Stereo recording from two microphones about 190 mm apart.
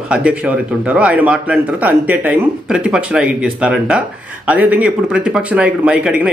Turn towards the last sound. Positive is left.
turn(degrees=-5)  # may be behind; listen again after turning